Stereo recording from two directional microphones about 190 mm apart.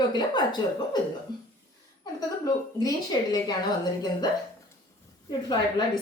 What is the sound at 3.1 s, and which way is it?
Speech, 20° left (ahead or behind).